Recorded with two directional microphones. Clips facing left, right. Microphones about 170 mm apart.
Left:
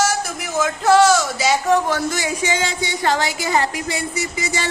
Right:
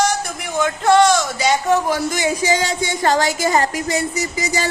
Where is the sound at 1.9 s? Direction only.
15° right (ahead or behind).